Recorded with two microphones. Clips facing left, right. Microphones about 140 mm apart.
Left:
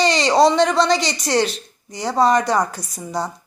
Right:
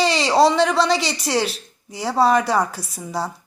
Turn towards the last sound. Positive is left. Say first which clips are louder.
# left 1 dB
turn(degrees=-5)  # may be behind; listen again after turning